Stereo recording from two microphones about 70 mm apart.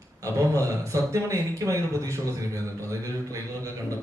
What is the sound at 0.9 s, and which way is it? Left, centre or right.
A man's voice, right.